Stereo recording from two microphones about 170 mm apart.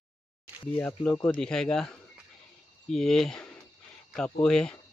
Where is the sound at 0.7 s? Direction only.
10° left (ahead or behind).